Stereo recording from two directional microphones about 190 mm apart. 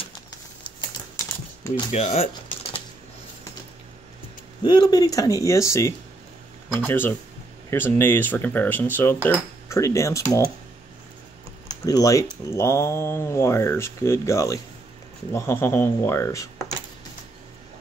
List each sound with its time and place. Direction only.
1.1 s typing: 15° left (ahead or behind)
1.9 s speech: 35° left (ahead or behind)
4.6 s speech: 20° left (ahead or behind)
11.6 s speech: 20° left (ahead or behind)